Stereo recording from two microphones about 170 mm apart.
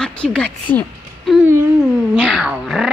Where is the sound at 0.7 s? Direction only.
Centre (ahead or behind).